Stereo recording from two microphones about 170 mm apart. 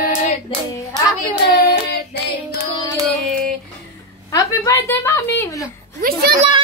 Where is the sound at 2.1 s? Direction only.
70° left (ahead or behind).